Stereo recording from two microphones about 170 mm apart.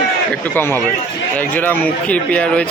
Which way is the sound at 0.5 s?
15° left (ahead or behind).